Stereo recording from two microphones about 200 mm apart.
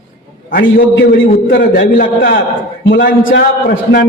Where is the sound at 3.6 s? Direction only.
45° left (ahead or behind).